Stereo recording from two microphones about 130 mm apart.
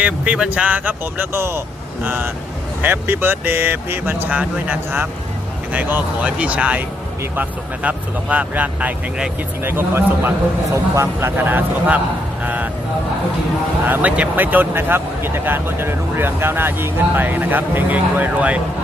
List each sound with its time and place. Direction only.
0.0 s speech: 10° right (ahead or behind)
13.8 s speech: 15° right (ahead or behind)